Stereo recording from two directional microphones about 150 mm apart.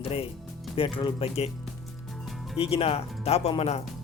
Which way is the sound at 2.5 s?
40° left (ahead or behind).